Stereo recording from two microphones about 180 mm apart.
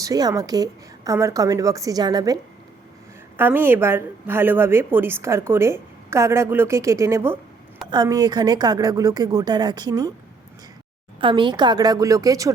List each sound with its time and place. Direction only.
0.0 s a woman's voice: 20° right (ahead or behind)
11.2 s a woman's voice: 25° right (ahead or behind)